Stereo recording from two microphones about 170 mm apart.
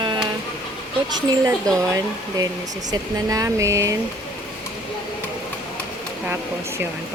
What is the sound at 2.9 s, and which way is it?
Speech, 20° right (ahead or behind).